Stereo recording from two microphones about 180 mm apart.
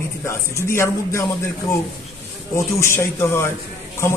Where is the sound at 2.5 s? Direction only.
15° left (ahead or behind).